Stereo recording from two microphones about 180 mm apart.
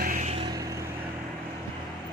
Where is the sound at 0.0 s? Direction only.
45° right (ahead or behind); by 0.9 s 20° right (ahead or behind).